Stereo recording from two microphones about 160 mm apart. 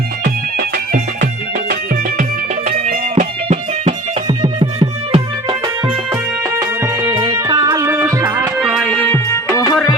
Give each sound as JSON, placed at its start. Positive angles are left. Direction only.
{"t": 2.6, "sound": "music", "side_deg": -55}
{"t": 4.3, "sound": "music", "side_deg": -25}
{"t": 8.5, "sound": "music", "side_deg": -5}
{"t": 9.0, "sound": "music", "side_deg": 10}